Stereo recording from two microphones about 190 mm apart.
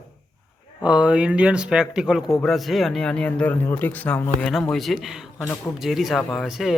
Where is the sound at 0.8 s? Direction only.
5° right (ahead or behind).